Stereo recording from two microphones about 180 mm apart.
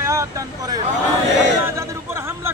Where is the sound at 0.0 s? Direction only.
15° right (ahead or behind).